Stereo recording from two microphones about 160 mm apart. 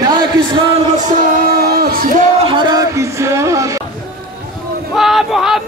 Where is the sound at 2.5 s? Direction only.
25° right (ahead or behind).